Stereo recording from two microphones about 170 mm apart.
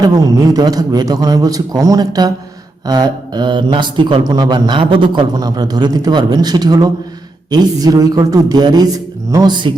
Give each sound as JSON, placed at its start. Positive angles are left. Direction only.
{"t": 0.0, "sound": "a man's voice", "side_deg": -20}